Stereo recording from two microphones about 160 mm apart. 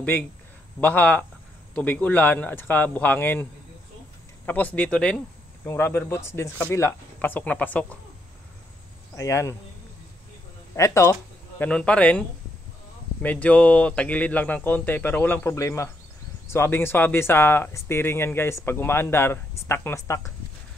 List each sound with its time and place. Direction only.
0.7 s speech: 10° left (ahead or behind)
4.5 s speech: 10° left (ahead or behind)
9.1 s speech: 20° left (ahead or behind)
10.8 s speech: 20° left (ahead or behind)